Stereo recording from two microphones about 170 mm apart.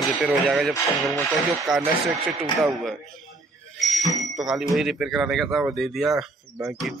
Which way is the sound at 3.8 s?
Centre (ahead or behind).